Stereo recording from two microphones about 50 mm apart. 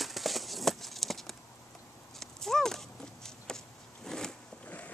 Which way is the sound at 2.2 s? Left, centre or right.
Centre.